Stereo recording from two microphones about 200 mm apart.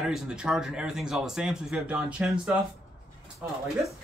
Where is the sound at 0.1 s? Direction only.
5° right (ahead or behind).